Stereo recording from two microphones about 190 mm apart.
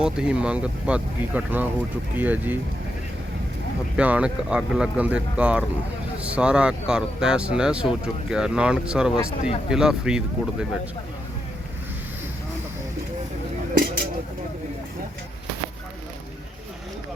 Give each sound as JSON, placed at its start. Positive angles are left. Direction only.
{"t": 0.0, "sound": "speech", "side_deg": -5}
{"t": 3.9, "sound": "speech", "side_deg": -5}